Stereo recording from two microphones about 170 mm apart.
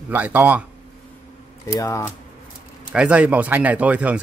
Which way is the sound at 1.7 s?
20° left (ahead or behind).